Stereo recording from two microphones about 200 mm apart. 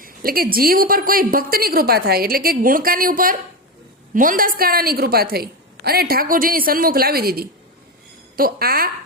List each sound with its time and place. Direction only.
0.0 s a woman's voice: 45° right (ahead or behind)